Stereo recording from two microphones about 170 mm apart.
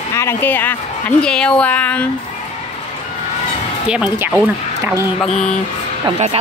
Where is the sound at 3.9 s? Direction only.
5° right (ahead or behind).